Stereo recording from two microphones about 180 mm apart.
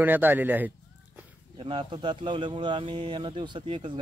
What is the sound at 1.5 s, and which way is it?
Speech, 30° right (ahead or behind).